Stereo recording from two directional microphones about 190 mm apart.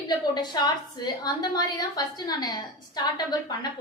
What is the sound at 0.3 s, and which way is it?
A woman's voice, 20° left (ahead or behind).